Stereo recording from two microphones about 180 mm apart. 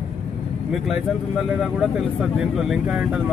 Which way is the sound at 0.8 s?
Centre (ahead or behind).